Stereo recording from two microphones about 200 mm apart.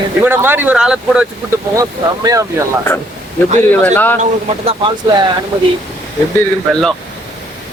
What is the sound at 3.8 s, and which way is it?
Speech, 10° left (ahead or behind).